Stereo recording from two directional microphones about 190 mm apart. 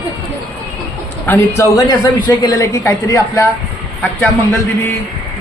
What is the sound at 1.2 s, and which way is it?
A man's voice, 10° left (ahead or behind).